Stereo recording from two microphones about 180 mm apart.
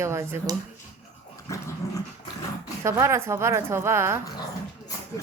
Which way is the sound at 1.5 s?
20° left (ahead or behind).